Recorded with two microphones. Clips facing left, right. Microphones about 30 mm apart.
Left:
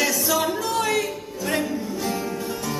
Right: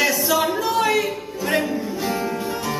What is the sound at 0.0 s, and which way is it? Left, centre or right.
Music, centre.